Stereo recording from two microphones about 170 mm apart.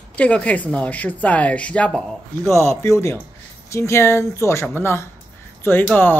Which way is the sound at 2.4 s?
15° left (ahead or behind).